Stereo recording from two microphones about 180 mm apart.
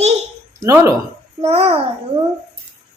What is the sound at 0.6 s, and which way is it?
Speech, 20° right (ahead or behind).